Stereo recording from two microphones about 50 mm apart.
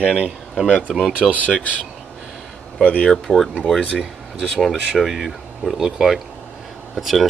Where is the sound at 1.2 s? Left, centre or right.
Centre.